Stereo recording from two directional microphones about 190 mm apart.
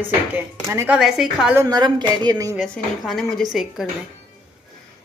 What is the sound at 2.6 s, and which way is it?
Speech, centre (ahead or behind).